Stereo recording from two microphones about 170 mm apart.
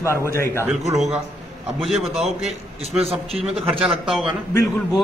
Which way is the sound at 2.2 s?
35° right (ahead or behind).